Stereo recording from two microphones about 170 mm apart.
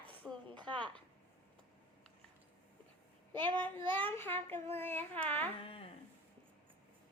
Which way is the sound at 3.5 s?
10° left (ahead or behind).